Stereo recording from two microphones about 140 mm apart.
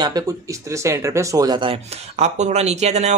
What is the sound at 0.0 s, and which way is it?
Speech, 25° right (ahead or behind).